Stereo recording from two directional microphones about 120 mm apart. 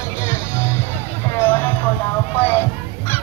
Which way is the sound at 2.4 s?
15° left (ahead or behind).